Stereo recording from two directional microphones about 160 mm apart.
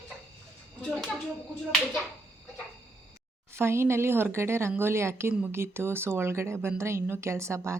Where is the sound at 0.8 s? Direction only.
10° left (ahead or behind).